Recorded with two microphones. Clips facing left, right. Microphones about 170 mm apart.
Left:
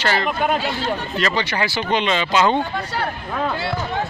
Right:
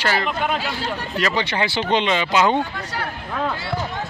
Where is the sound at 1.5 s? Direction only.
25° right (ahead or behind).